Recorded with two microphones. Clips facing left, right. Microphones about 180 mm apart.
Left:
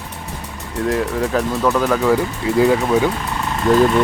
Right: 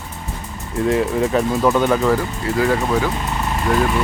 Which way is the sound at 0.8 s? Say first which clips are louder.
Right 2 dB; 5° right (ahead or behind).